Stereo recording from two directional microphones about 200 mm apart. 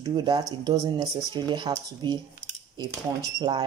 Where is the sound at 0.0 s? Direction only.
20° right (ahead or behind).